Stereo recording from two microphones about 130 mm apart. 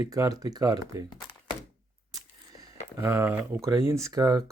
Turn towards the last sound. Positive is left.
turn(degrees=-25)  # may be behind; listen again after turning